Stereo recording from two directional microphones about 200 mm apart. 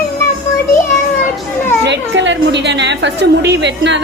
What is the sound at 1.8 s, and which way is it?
A woman's voice, 60° right (ahead or behind).